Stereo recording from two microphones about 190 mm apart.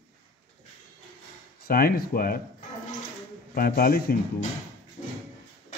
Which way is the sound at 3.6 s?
50° left (ahead or behind).